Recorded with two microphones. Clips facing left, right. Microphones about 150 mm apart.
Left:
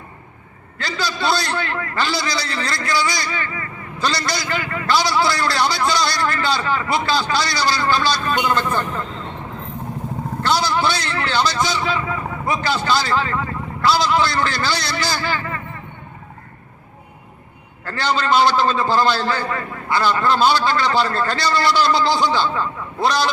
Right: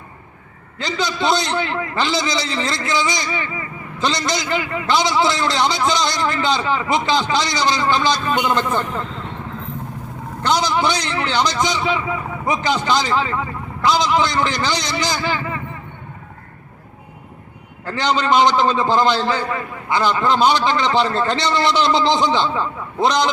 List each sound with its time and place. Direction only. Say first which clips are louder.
0.8 s a man's voice: right 2 dB; 20° right (ahead or behind)
10.4 s a man's voice: right 1 dB; 20° right (ahead or behind)
17.8 s a man's voice: right 2 dB; 20° right (ahead or behind)